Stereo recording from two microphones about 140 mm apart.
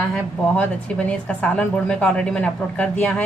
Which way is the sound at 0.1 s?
10° left (ahead or behind).